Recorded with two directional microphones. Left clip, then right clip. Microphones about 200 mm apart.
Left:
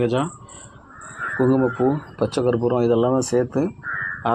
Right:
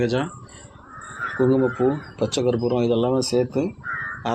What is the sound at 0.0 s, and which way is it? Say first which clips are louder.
Speech: left 2 dB; 20° left (ahead or behind).